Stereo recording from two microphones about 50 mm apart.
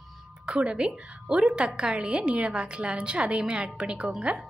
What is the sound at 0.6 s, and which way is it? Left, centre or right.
A woman's voice, centre.